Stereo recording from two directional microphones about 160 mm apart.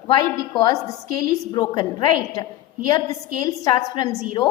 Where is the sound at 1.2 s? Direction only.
25° left (ahead or behind).